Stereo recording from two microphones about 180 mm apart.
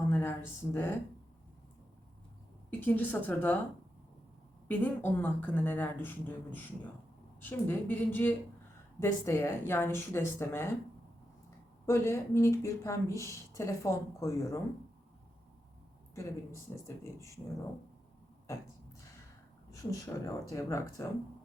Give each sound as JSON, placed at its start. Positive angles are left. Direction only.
{"t": 0.1, "sound": "speech", "side_deg": 10}
{"t": 2.6, "sound": "speech", "side_deg": 10}
{"t": 4.7, "sound": "speech", "side_deg": 10}
{"t": 11.9, "sound": "speech", "side_deg": 15}
{"t": 16.7, "sound": "speech", "side_deg": 15}
{"t": 19.7, "sound": "speech", "side_deg": 20}